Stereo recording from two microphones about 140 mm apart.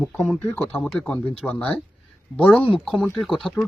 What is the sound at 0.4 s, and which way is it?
Speech, 15° left (ahead or behind).